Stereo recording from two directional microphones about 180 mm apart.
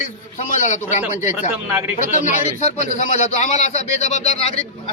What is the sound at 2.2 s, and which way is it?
A man's voice, 40° left (ahead or behind).